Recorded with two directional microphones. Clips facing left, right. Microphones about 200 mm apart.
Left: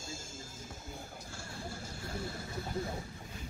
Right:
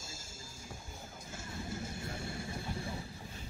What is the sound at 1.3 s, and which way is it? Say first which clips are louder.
Vehicle: right 3 dB; 20° right (ahead or behind).